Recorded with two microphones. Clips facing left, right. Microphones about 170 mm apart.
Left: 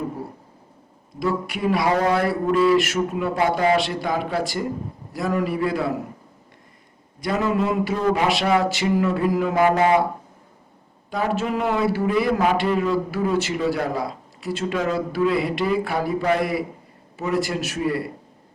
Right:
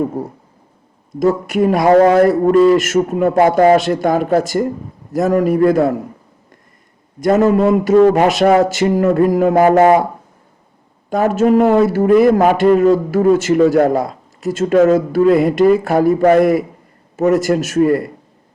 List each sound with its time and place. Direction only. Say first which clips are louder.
1.2 s a man's voice: right 10 dB; 45° right (ahead or behind)
7.2 s a man's voice: right 10 dB; 45° right (ahead or behind)
11.1 s a man's voice: right 11 dB; 45° right (ahead or behind)